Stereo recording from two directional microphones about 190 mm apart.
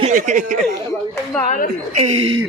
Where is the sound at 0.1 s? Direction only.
45° right (ahead or behind).